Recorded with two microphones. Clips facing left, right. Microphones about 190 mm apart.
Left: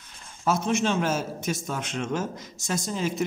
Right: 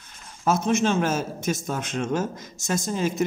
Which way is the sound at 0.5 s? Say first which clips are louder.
Right 3 dB; 45° right (ahead or behind).